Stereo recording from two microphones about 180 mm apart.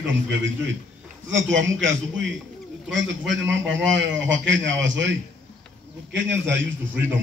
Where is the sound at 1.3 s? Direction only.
90° right.